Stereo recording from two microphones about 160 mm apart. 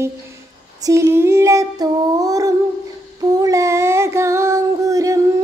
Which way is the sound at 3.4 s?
20° right (ahead or behind).